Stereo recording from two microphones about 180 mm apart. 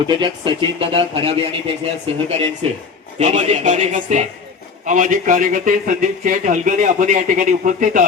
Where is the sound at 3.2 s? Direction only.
40° right (ahead or behind).